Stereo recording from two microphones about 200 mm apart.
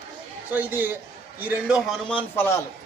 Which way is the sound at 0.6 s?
10° right (ahead or behind).